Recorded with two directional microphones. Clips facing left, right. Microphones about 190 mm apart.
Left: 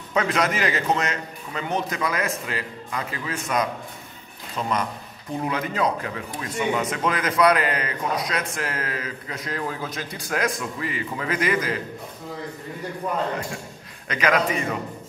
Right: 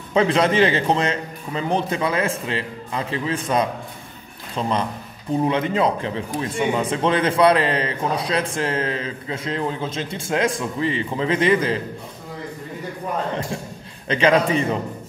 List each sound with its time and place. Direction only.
0.1 s a man's voice: 30° right (ahead or behind)
14.0 s a man's voice: 30° right (ahead or behind)